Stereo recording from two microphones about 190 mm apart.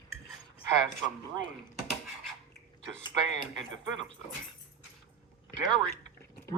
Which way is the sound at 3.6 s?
75° right (ahead or behind).